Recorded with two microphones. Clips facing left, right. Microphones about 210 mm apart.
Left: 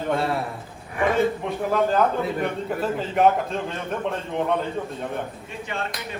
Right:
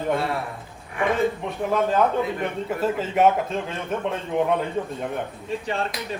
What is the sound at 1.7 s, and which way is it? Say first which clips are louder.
A man's voice: even; centre (ahead or behind).